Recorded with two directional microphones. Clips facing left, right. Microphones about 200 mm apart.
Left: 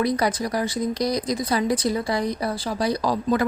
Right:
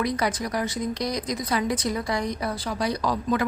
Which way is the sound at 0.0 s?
35° left (ahead or behind).